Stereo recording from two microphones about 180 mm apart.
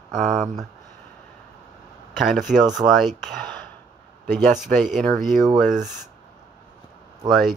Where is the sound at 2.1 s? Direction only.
Centre (ahead or behind).